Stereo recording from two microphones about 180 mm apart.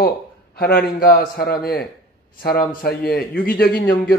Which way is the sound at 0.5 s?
60° left (ahead or behind).